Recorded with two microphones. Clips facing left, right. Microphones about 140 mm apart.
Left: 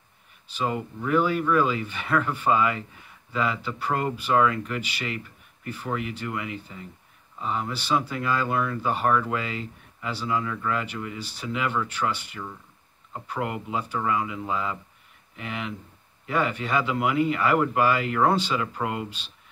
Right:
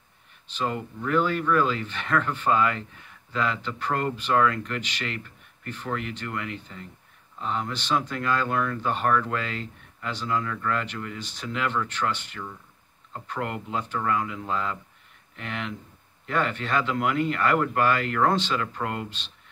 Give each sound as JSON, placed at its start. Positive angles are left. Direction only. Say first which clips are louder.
{"t": 0.6, "sound": "speech", "louder": "left 1 dB", "side_deg": 5}